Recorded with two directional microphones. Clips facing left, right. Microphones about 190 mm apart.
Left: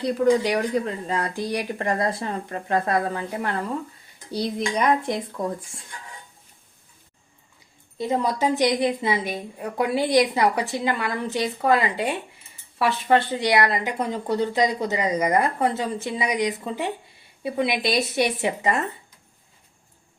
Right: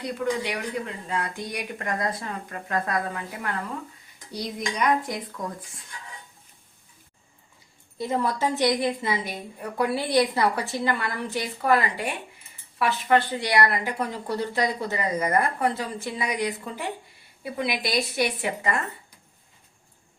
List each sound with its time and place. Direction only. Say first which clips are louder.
0.0 s a woman's voice: left 8 dB; 35° left (ahead or behind)
7.9 s a woman's voice: left 2 dB; 20° left (ahead or behind)